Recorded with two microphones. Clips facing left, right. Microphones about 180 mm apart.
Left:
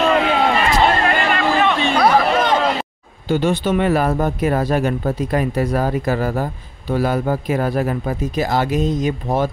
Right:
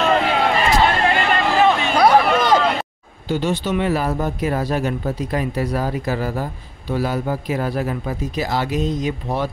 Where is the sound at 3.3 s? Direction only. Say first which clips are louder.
Left 3 dB; 55° left (ahead or behind).